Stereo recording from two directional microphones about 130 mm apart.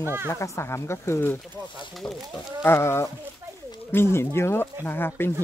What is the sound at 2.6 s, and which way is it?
Speech, 20° left (ahead or behind).